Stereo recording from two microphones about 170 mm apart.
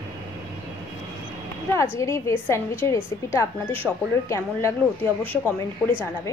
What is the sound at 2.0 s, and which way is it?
A woman's voice, 20° left (ahead or behind).